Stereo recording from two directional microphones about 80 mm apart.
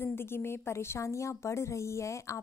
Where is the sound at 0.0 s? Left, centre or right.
Left.